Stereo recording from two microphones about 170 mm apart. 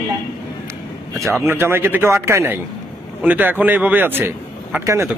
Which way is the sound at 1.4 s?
15° right (ahead or behind).